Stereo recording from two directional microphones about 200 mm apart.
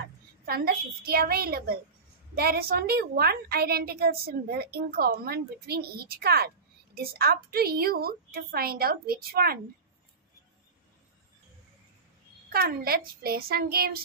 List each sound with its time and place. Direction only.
0.5 s a woman's voice: 50° right (ahead or behind)
12.4 s a woman's voice: 50° right (ahead or behind)